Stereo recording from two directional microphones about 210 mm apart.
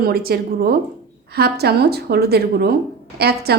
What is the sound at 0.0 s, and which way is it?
A woman's voice, 45° right (ahead or behind).